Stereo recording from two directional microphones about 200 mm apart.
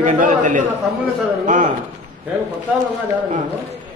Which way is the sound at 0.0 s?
40° right (ahead or behind).